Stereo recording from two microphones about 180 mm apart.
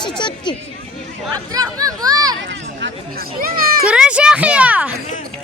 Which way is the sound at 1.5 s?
20° right (ahead or behind).